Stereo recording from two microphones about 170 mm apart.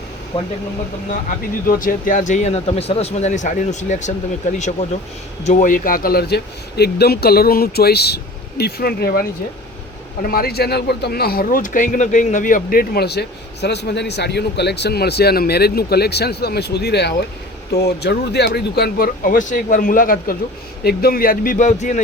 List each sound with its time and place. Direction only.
0.3 s speech: 30° left (ahead or behind)
1.6 s speech: 60° left (ahead or behind)
10.2 s speech: 60° left (ahead or behind); by 22.0 s 45° left (ahead or behind)